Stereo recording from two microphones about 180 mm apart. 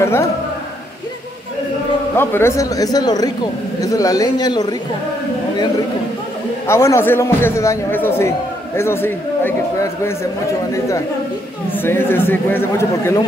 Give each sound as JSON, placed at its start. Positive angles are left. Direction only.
{"t": 0.0, "sound": "a man's voice", "side_deg": 15}
{"t": 2.1, "sound": "speech", "side_deg": 15}
{"t": 6.7, "sound": "a man's voice", "side_deg": 15}
{"t": 11.8, "sound": "a man's voice", "side_deg": 10}